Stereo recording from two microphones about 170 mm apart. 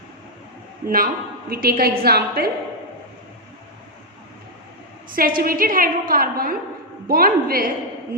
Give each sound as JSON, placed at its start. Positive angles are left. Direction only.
{"t": 0.9, "sound": "a woman's voice", "side_deg": -60}
{"t": 5.4, "sound": "a woman's voice", "side_deg": -55}